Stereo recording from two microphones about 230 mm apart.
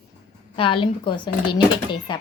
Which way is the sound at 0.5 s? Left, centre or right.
Left.